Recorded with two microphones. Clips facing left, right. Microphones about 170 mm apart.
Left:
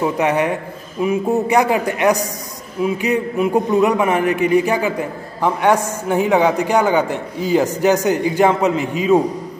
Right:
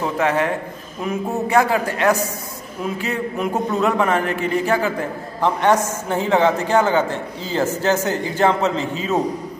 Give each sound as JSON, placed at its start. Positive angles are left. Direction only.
{"t": 0.0, "sound": "a man's voice", "side_deg": 15}